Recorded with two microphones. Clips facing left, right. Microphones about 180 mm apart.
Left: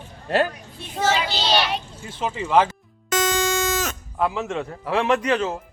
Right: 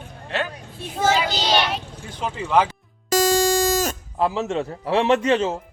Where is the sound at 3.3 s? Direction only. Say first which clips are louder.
Right 4 dB; 35° right (ahead or behind).